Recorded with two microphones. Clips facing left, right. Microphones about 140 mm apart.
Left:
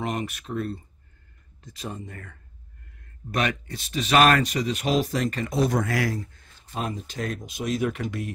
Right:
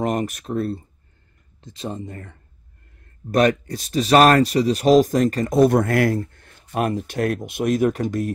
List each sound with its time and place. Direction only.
0.0 s speech: 40° right (ahead or behind)
1.6 s speech: 25° right (ahead or behind)
3.3 s speech: 40° right (ahead or behind)